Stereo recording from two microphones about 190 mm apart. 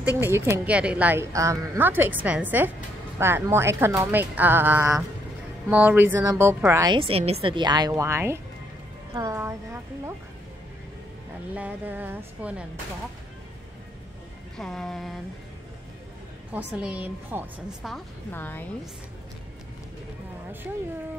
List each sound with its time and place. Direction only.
0.2 s a woman's voice: 10° right (ahead or behind)
11.5 s a woman's voice: 10° right (ahead or behind)
14.6 s speech: centre (ahead or behind)
16.5 s a woman's voice: 5° right (ahead or behind)
18.3 s a woman's voice: 10° left (ahead or behind)